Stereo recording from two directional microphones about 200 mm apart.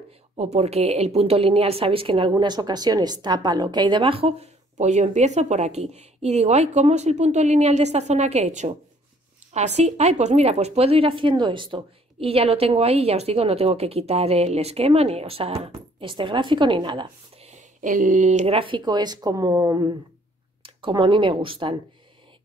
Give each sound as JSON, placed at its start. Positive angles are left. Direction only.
{"t": 0.4, "sound": "a woman's voice", "side_deg": -35}